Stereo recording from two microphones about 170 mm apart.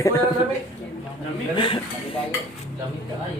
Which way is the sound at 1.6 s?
30° left (ahead or behind).